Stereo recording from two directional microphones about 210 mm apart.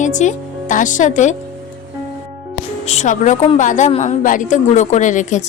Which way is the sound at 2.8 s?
35° left (ahead or behind).